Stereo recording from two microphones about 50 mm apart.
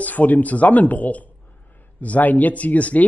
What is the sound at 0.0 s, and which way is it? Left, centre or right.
A man's voice, left.